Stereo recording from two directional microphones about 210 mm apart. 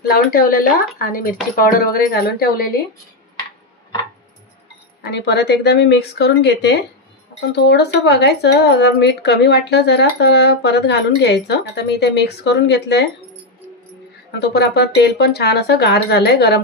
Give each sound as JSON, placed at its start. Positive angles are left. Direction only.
{"t": 0.1, "sound": "speech", "side_deg": 45}
{"t": 5.0, "sound": "speech", "side_deg": 55}
{"t": 14.4, "sound": "speech", "side_deg": 50}